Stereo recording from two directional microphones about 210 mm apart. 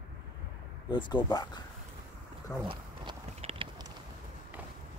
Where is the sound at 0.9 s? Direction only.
20° left (ahead or behind).